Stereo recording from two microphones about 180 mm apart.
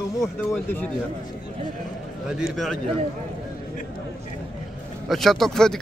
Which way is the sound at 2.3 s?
Centre (ahead or behind).